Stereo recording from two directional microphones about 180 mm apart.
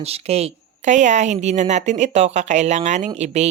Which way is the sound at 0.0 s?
35° right (ahead or behind).